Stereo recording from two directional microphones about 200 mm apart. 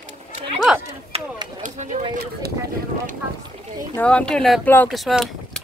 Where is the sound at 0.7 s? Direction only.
Centre (ahead or behind).